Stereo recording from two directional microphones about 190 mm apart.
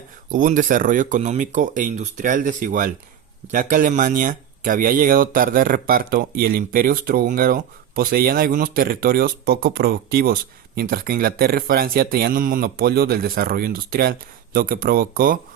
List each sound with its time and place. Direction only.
0.3 s speech: 45° right (ahead or behind)